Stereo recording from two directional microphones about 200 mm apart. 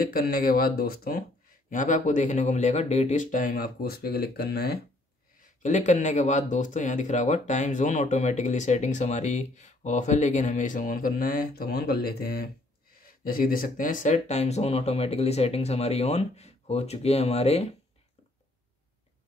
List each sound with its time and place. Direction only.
0.0 s speech: 45° left (ahead or behind)
5.4 s speech: 35° left (ahead or behind)